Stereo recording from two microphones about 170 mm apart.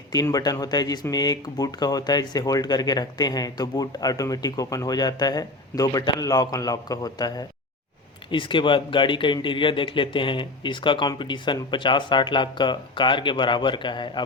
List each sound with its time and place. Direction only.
0.1 s speech: 20° left (ahead or behind)